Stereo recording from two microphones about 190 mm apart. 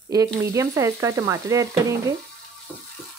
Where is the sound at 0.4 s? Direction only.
15° right (ahead or behind).